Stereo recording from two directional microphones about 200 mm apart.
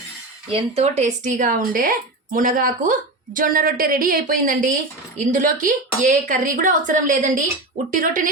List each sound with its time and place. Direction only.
0.5 s a woman's voice: 35° right (ahead or behind)